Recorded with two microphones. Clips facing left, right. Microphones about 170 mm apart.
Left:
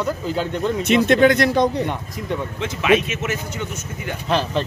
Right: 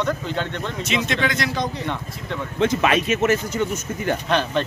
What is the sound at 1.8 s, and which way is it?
Speech, 10° left (ahead or behind).